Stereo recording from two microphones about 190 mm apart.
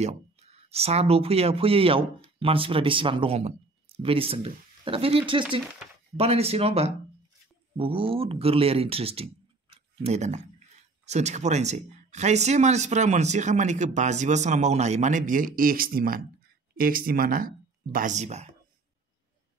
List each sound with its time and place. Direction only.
0.0 s speech: 35° right (ahead or behind)